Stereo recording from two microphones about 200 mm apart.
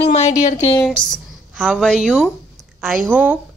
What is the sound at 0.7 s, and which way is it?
A woman's voice, 5° left (ahead or behind).